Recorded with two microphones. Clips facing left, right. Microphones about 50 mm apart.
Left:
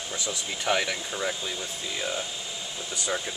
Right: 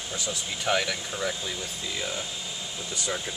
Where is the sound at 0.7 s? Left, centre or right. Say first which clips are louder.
Even; centre.